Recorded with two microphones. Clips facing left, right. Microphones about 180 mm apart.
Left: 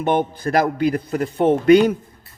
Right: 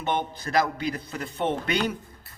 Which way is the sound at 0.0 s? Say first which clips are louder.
Left 9 dB; 50° left (ahead or behind).